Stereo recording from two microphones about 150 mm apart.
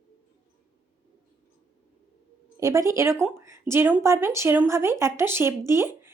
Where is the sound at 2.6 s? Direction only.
20° right (ahead or behind).